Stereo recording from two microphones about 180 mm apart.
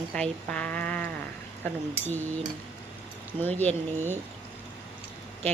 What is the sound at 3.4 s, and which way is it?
Speech, 10° left (ahead or behind).